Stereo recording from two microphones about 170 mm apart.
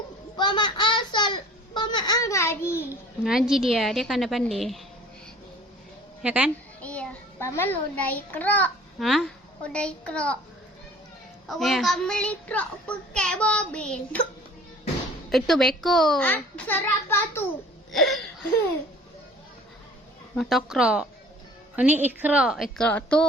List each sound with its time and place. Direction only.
0.3 s a sound: 25° left (ahead or behind)
3.2 s a child's voice: 5° right (ahead or behind)
6.2 s a woman's voice: 10° right (ahead or behind)
6.8 s a child's voice: 10° left (ahead or behind)
11.4 s a child's voice: centre (ahead or behind)
15.3 s a child's voice: centre (ahead or behind)
17.9 s a sound: centre (ahead or behind)
20.3 s a child's voice: centre (ahead or behind)